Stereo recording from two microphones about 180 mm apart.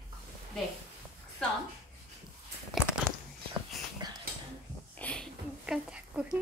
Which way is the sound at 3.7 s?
Centre (ahead or behind).